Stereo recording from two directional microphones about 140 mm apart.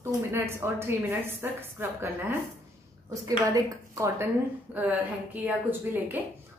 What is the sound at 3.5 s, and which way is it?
Speech, 25° right (ahead or behind).